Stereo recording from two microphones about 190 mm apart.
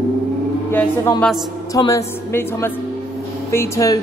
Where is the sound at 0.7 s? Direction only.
10° left (ahead or behind).